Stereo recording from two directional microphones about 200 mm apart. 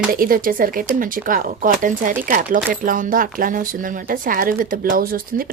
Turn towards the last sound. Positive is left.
turn(degrees=-45)  # may be behind; listen again after turning